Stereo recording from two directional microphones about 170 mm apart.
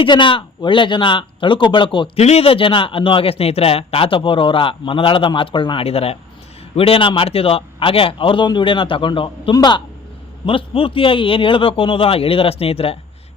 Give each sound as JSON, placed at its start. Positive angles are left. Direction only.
{"t": 0.0, "sound": "speech", "side_deg": 30}